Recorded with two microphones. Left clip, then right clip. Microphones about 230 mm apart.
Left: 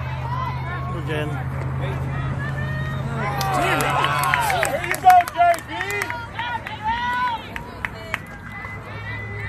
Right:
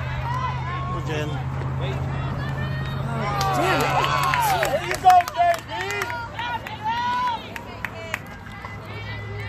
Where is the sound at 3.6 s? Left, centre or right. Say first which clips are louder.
Left 2 dB; centre.